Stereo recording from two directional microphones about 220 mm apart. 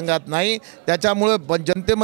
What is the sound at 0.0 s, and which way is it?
A man's voice, 15° right (ahead or behind).